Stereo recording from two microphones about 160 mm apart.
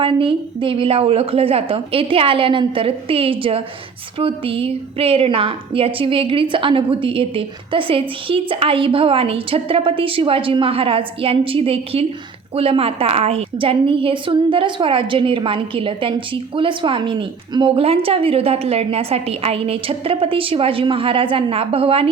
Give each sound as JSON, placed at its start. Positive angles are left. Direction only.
{"t": 0.0, "sound": "a woman's voice", "side_deg": -35}